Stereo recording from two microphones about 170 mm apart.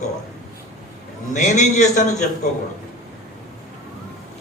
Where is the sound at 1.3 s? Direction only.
45° left (ahead or behind).